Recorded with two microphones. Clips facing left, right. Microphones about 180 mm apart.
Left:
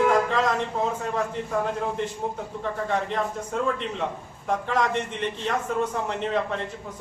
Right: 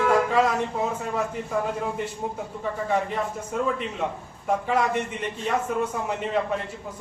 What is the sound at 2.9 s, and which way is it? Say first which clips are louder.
Speech: right 1 dB; 5° right (ahead or behind).